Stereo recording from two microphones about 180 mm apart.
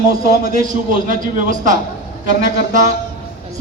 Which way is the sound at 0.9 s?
45° right (ahead or behind).